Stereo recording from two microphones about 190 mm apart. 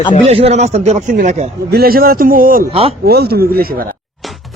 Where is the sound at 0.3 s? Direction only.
35° right (ahead or behind).